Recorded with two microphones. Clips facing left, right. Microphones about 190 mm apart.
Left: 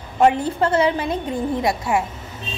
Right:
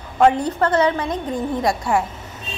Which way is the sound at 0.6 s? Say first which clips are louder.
Even; 25° left (ahead or behind).